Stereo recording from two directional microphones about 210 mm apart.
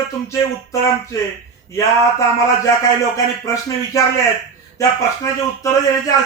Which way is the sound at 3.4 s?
15° left (ahead or behind).